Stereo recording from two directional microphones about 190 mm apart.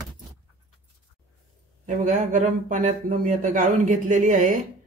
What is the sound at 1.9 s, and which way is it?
A man's voice, 45° right (ahead or behind).